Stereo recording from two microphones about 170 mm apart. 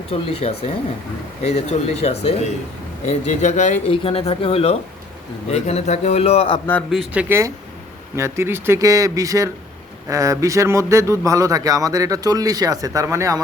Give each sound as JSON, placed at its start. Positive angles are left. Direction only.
{"t": 0.1, "sound": "a man's voice", "side_deg": 35}
{"t": 3.8, "sound": "a man's voice", "side_deg": 35}
{"t": 6.9, "sound": "speech", "side_deg": -5}